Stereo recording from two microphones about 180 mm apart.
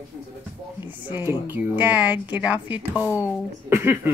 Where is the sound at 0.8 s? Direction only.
10° right (ahead or behind).